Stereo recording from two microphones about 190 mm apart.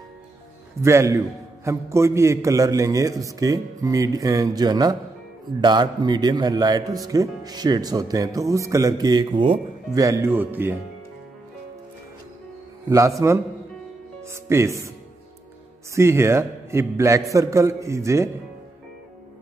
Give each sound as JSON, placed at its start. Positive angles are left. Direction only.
{"t": 0.7, "sound": "a man's voice", "side_deg": -15}
{"t": 13.2, "sound": "a man's voice", "side_deg": -15}
{"t": 15.9, "sound": "a man's voice", "side_deg": -15}